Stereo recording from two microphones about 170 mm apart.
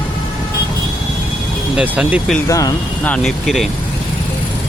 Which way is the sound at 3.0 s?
5° left (ahead or behind).